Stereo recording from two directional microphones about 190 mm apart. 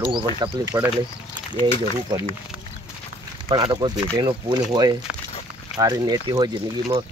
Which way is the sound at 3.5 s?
25° right (ahead or behind).